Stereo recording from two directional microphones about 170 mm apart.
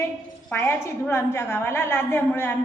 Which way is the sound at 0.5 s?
15° left (ahead or behind).